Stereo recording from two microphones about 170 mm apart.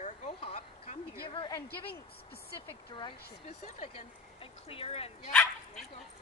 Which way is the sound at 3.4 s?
45° left (ahead or behind).